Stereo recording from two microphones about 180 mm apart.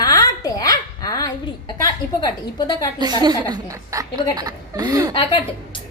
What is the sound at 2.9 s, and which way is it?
A woman's voice, 25° right (ahead or behind).